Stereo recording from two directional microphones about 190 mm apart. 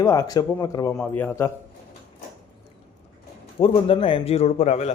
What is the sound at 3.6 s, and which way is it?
A man's voice, 30° left (ahead or behind).